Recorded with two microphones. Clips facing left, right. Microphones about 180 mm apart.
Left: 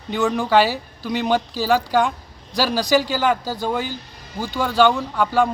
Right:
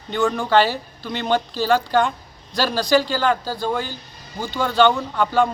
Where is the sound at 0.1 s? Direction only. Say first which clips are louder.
Even; 5° left (ahead or behind).